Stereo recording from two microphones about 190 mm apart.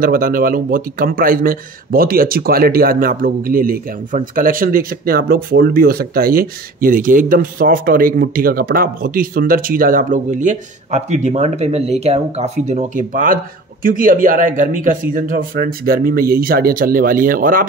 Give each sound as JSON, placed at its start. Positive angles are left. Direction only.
{"t": 0.0, "sound": "speech", "side_deg": -50}